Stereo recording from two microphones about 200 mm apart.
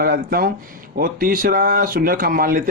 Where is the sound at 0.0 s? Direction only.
50° right (ahead or behind).